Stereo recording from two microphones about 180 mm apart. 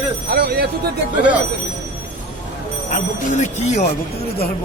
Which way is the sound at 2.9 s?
40° left (ahead or behind).